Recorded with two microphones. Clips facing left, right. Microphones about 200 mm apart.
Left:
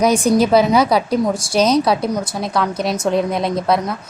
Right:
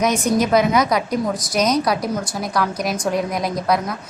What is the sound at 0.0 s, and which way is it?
A woman's voice, 30° left (ahead or behind).